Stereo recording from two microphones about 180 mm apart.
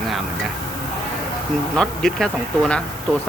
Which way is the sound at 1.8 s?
5° left (ahead or behind).